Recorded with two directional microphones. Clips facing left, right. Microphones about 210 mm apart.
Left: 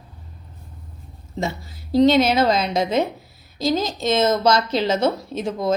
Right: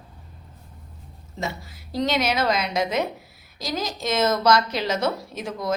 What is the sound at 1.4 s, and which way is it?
A woman's voice, 25° left (ahead or behind).